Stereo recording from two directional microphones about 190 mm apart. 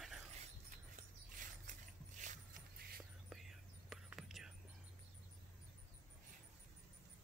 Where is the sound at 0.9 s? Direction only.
40° right (ahead or behind).